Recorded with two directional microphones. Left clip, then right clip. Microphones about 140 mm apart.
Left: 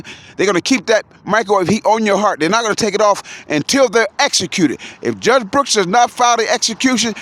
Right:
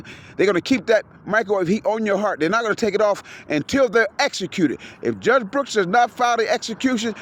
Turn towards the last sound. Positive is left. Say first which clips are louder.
# left 7 dB
turn(degrees=40)  # may be behind; listen again after turning